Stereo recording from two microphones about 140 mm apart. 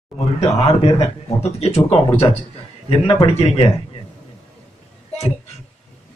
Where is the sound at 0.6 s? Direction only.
45° left (ahead or behind).